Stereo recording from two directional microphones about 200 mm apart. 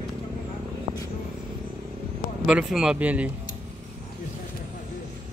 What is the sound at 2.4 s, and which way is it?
Speech, 5° right (ahead or behind).